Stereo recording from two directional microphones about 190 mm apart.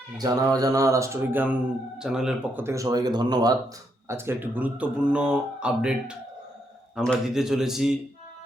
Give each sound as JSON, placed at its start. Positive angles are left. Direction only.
{"t": 0.2, "sound": "speech", "side_deg": -20}